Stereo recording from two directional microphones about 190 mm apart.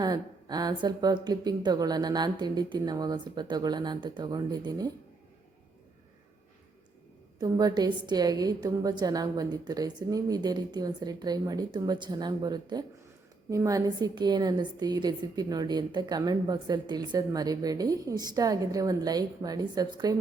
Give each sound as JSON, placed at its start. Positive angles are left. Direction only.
{"t": 0.0, "sound": "a woman's voice", "side_deg": -20}
{"t": 7.3, "sound": "a woman's voice", "side_deg": -20}